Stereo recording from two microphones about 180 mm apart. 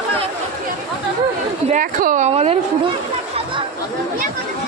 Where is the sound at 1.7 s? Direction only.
50° right (ahead or behind).